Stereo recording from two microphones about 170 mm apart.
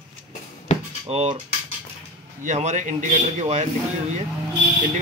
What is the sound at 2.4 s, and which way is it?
A man's voice, 45° right (ahead or behind).